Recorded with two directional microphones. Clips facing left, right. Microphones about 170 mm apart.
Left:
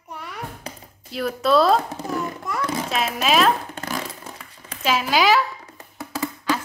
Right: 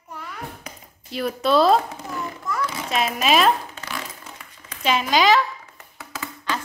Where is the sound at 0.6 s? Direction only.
35° left (ahead or behind).